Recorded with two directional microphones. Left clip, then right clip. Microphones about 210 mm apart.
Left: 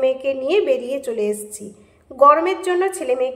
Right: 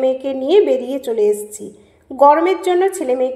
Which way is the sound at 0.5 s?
15° right (ahead or behind).